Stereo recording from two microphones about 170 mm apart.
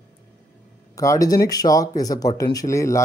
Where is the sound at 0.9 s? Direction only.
20° left (ahead or behind).